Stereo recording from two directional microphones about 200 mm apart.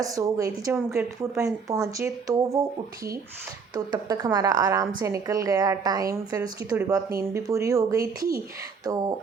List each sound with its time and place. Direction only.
0.0 s a woman's voice: 15° right (ahead or behind)
3.8 s a woman's voice: 20° right (ahead or behind)